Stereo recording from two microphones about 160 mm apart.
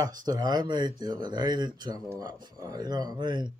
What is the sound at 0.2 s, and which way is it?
Speech, 25° right (ahead or behind).